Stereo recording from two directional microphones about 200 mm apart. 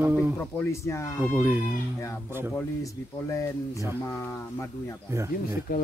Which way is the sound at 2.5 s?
15° left (ahead or behind).